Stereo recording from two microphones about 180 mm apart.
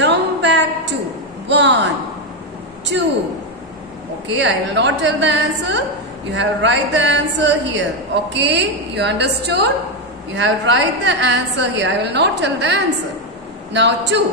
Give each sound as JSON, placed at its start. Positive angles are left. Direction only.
{"t": 0.0, "sound": "a sound", "side_deg": -80}
{"t": 4.4, "sound": "a woman's voice", "side_deg": -85}
{"t": 8.3, "sound": "a woman's voice", "side_deg": -75}
{"t": 10.3, "sound": "a woman's voice", "side_deg": -85}